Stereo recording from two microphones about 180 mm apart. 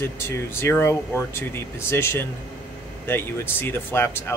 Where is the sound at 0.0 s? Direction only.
15° left (ahead or behind).